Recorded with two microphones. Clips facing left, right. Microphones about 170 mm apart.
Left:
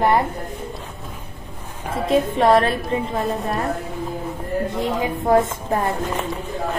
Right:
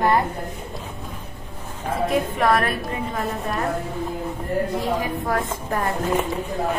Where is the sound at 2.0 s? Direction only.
25° left (ahead or behind).